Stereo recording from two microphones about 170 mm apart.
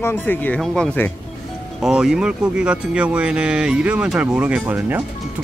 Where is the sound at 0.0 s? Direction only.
10° left (ahead or behind).